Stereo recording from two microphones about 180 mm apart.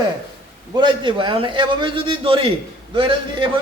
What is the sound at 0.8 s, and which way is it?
A man's voice, 25° right (ahead or behind).